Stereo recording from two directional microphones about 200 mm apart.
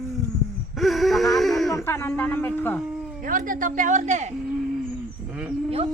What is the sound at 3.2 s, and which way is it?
Speech, 40° right (ahead or behind).